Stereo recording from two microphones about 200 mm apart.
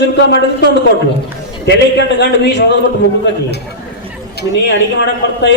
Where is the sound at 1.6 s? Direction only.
60° left (ahead or behind).